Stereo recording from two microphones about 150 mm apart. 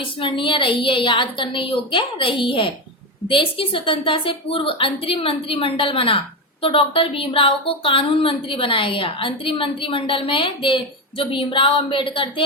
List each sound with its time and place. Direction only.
0.0 s a woman's voice: 35° left (ahead or behind)